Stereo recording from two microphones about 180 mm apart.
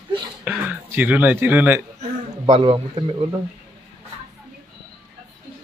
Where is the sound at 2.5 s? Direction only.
35° right (ahead or behind).